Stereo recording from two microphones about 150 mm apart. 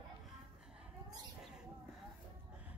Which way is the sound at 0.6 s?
5° right (ahead or behind).